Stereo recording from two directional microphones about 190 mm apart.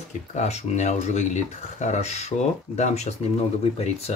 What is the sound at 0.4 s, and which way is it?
Speech, 40° left (ahead or behind).